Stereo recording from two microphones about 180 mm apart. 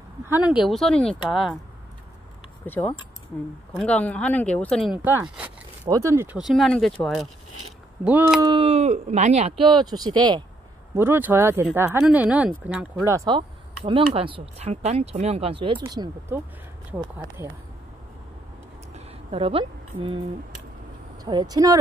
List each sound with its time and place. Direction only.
0.3 s speech: 5° right (ahead or behind)
2.6 s speech: 10° left (ahead or behind)
4.9 s speech: 10° right (ahead or behind)
6.3 s speech: centre (ahead or behind)
8.5 s speech: 30° right (ahead or behind)
11.0 s speech: 10° right (ahead or behind); by 15.8 s 30° right (ahead or behind)
15.8 s speech: 20° right (ahead or behind)
18.9 s a sound: 30° right (ahead or behind)
21.2 s speech: 20° right (ahead or behind)